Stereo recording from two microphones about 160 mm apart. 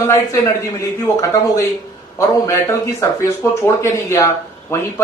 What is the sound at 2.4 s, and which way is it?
A man's voice, 20° left (ahead or behind).